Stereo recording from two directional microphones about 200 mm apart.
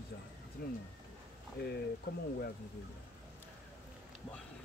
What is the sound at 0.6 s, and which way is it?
Speech, 50° left (ahead or behind).